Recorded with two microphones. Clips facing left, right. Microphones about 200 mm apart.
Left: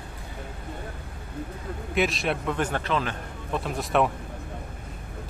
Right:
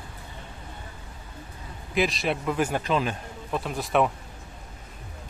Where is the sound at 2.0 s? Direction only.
Centre (ahead or behind).